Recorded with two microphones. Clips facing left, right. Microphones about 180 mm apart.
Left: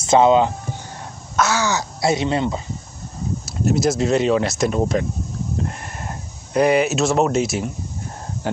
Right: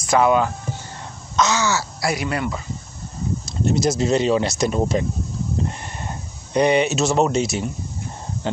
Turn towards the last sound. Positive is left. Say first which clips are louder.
# left 1 dB
turn(degrees=0)  # may be behind; listen again after turning